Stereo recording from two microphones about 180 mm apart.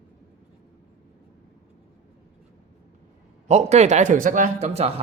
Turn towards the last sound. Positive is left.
turn(degrees=-35)  # may be behind; listen again after turning